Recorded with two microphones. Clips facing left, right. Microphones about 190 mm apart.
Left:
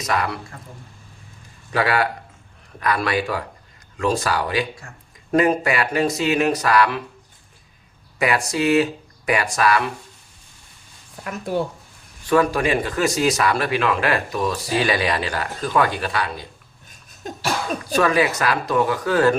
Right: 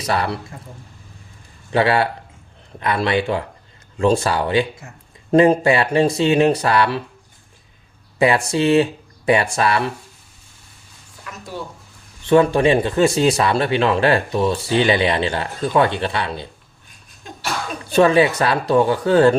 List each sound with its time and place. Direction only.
0.0 s speech: 30° right (ahead or behind)
1.7 s speech: 25° right (ahead or behind)
8.2 s speech: 30° right (ahead or behind)
11.2 s speech: 60° left (ahead or behind)
12.2 s speech: 25° right (ahead or behind)
16.9 s a sound: 45° left (ahead or behind)
17.9 s speech: 30° right (ahead or behind)